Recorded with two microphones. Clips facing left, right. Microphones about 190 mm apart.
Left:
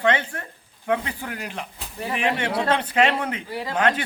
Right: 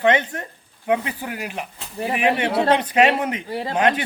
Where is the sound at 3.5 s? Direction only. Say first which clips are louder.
Right 3 dB; 30° right (ahead or behind).